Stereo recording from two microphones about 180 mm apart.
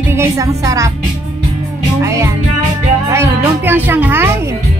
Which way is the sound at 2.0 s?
15° right (ahead or behind).